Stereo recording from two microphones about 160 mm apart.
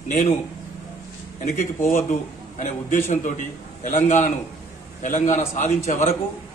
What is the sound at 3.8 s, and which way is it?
A man's voice, 45° left (ahead or behind).